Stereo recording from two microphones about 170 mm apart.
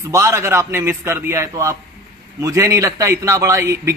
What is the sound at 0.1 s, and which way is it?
A man's voice, 15° right (ahead or behind).